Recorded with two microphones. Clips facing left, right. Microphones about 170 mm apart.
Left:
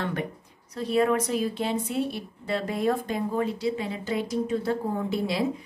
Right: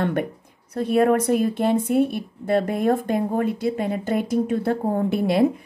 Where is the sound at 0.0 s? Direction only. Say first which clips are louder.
Right 7 dB; 55° right (ahead or behind).